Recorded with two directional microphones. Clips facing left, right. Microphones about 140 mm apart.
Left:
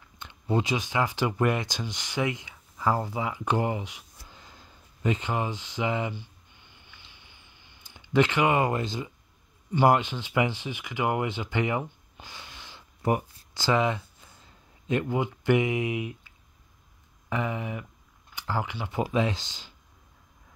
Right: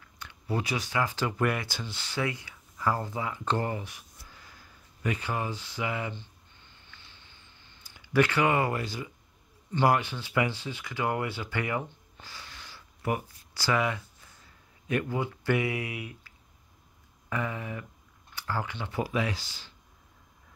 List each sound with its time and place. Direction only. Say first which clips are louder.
0.2 s speech: left 5 dB; 20° left (ahead or behind)
6.1 s a sound: left 3 dB; 15° left (ahead or behind)
9.7 s speech: left 3 dB; 15° left (ahead or behind)